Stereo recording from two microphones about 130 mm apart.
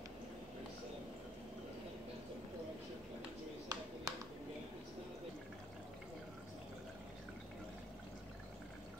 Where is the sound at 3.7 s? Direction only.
30° right (ahead or behind).